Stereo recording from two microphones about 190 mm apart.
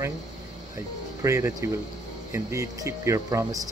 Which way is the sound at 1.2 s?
15° right (ahead or behind).